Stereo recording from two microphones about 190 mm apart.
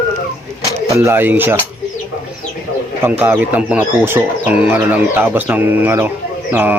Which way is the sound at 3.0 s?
10° right (ahead or behind).